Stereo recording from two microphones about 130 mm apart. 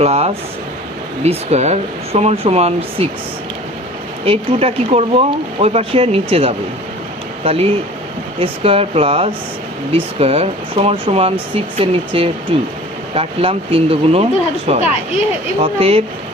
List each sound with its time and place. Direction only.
0.0 s speech: 50° right (ahead or behind)
4.3 s speech: 50° right (ahead or behind)
7.4 s speech: 50° right (ahead or behind)